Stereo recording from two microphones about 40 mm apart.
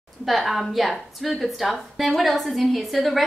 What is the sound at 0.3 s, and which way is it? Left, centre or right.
A woman's voice, centre.